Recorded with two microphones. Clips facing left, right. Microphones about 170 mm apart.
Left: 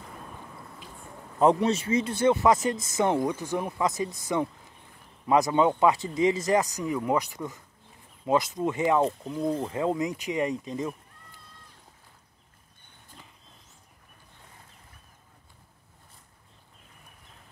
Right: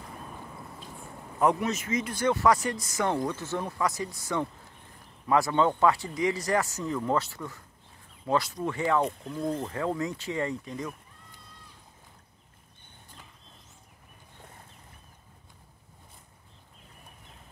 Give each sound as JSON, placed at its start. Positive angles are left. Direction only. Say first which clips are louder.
{"t": 1.4, "sound": "speech", "louder": "left 4 dB", "side_deg": 30}